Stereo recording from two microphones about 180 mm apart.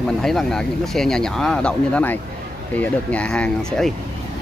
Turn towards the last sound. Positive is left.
turn(degrees=5)  # may be behind; listen again after turning